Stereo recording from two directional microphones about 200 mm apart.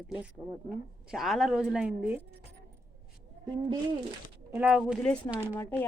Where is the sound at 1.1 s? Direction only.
Centre (ahead or behind).